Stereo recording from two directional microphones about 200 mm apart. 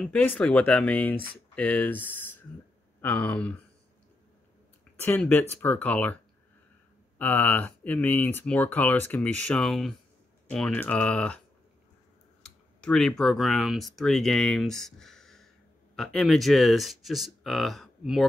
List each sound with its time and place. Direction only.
0.0 s speech: 5° left (ahead or behind)
5.0 s speech: 10° left (ahead or behind)
7.2 s speech: 10° left (ahead or behind)
12.4 s speech: 5° left (ahead or behind)